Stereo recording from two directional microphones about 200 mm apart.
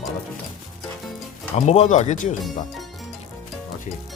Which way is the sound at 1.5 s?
35° left (ahead or behind).